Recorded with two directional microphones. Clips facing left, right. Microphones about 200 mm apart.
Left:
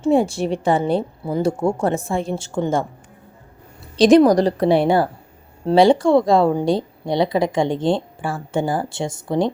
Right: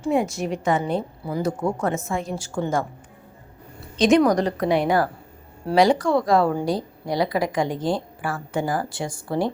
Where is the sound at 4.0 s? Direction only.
35° left (ahead or behind).